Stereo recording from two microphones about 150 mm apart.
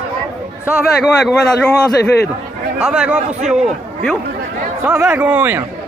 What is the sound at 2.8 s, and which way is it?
Speech, 5° right (ahead or behind).